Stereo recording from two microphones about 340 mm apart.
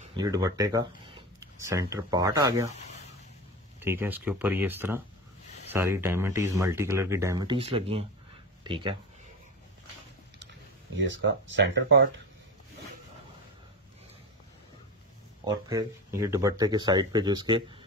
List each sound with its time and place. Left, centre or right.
0.0 s speech: centre
3.8 s speech: centre
11.0 s speech: right
15.4 s speech: centre